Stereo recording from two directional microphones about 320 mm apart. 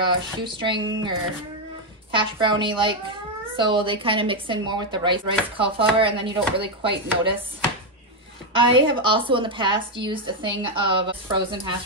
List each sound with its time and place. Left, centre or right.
0.0 s speech: centre
2.0 s speech: centre
8.5 s speech: centre